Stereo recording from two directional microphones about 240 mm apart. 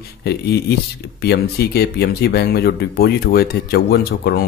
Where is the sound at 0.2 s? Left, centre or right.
Left.